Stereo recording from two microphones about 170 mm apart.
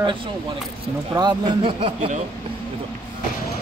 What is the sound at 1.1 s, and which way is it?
Speech, 25° right (ahead or behind).